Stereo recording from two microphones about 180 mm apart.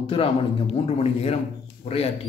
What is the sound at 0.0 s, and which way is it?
A man's voice, 30° left (ahead or behind).